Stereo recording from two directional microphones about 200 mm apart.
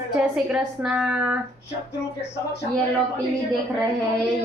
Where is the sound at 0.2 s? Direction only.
5° right (ahead or behind).